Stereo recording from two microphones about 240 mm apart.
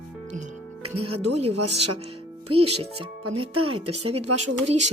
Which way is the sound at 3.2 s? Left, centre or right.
Right.